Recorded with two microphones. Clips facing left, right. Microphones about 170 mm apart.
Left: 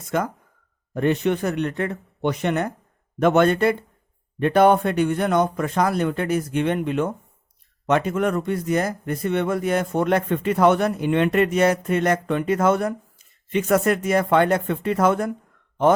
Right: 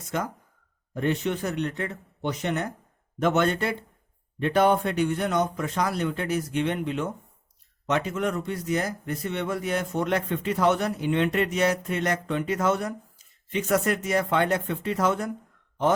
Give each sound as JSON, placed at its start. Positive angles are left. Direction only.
{"t": 0.9, "sound": "speech", "side_deg": 60}